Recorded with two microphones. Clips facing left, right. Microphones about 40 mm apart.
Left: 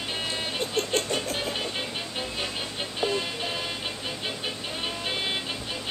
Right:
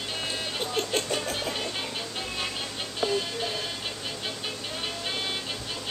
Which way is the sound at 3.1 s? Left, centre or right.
Centre.